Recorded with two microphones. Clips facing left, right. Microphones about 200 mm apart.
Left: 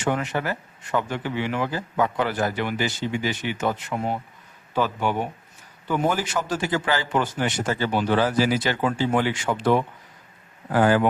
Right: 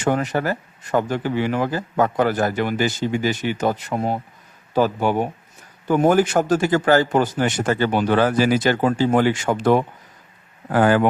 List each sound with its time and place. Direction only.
0.0 s speech: 40° right (ahead or behind)
7.6 s speech: 55° right (ahead or behind)